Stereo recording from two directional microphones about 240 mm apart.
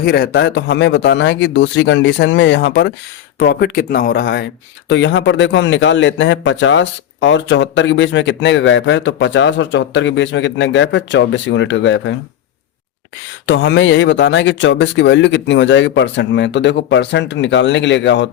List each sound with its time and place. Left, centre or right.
0.0 s a man's voice: left
13.4 s a man's voice: left